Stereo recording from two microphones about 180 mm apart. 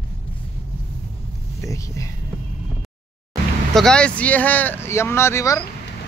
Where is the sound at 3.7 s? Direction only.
5° left (ahead or behind).